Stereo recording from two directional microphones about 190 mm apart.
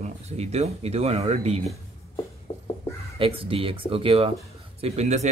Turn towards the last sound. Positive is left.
turn(degrees=-35)  # may be behind; listen again after turning